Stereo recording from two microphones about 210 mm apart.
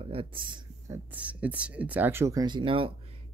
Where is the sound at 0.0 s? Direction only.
25° right (ahead or behind).